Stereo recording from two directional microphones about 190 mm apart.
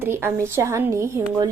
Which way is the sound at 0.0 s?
10° right (ahead or behind).